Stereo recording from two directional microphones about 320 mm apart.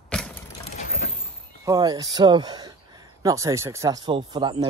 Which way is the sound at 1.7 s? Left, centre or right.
Centre.